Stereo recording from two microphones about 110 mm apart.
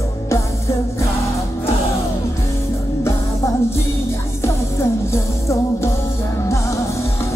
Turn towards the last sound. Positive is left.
turn(degrees=25)  # may be behind; listen again after turning